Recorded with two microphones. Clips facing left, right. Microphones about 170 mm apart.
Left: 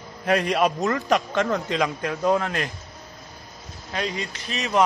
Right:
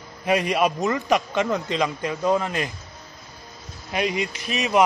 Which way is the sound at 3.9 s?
15° right (ahead or behind).